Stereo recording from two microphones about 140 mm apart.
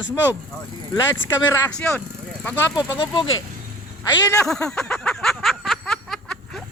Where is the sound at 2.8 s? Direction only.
30° left (ahead or behind).